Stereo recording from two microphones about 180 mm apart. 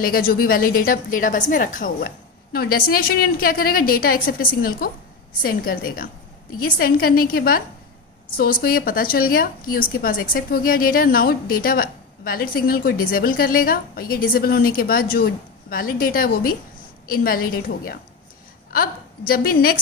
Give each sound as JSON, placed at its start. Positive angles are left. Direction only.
{"t": 0.0, "sound": "a woman's voice", "side_deg": 55}